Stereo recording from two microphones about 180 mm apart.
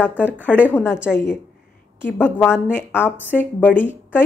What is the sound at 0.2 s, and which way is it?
Speech, 10° left (ahead or behind).